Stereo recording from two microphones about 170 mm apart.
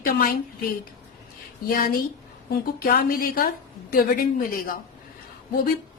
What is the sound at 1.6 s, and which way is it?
Speech, 60° left (ahead or behind).